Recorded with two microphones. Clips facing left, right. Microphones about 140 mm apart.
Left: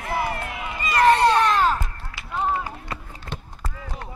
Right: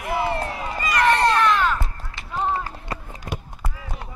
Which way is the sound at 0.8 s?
30° left (ahead or behind).